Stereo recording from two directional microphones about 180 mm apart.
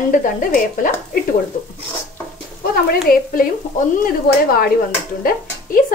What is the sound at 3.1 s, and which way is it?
Speech, 55° left (ahead or behind).